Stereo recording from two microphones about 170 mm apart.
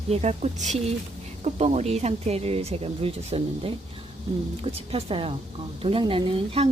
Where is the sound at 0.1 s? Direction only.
40° right (ahead or behind).